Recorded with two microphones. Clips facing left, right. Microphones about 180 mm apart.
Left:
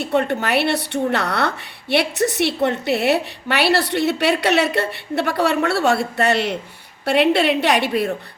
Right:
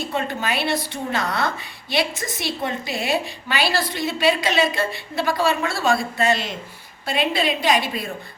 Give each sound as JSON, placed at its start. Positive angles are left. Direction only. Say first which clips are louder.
{"t": 0.0, "sound": "a woman's voice", "louder": "left 6 dB", "side_deg": 65}